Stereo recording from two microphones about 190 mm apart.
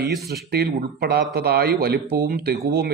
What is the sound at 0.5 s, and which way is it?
A man's voice, 55° right (ahead or behind).